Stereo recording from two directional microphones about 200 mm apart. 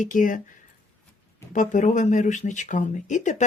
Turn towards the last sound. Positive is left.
turn(degrees=40)  # may be behind; listen again after turning